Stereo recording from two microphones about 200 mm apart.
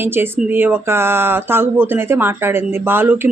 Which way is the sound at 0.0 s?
10° right (ahead or behind).